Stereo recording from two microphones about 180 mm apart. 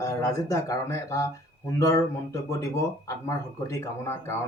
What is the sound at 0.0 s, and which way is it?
Speech, 15° left (ahead or behind).